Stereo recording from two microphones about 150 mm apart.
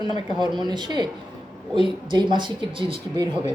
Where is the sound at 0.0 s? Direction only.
30° right (ahead or behind).